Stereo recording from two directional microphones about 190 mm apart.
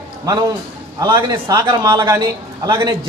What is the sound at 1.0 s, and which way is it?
A man's voice, 20° right (ahead or behind).